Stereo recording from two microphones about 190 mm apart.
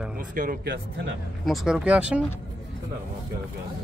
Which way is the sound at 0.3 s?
45° right (ahead or behind).